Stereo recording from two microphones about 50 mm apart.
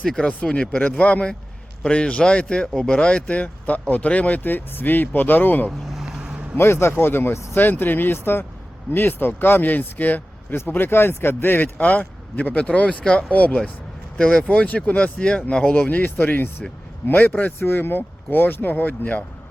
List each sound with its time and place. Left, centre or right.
0.0 s speech: centre
4.4 s speech: left
5.8 s vehicle: centre
6.1 s vehicle: centre
6.6 s speech: left
14.2 s speech: centre; by 19.2 s left